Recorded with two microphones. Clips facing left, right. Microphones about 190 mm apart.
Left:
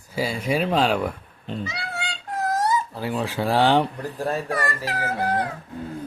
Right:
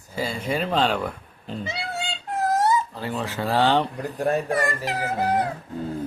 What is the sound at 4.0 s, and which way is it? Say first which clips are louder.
Speech: right 2 dB; 20° right (ahead or behind).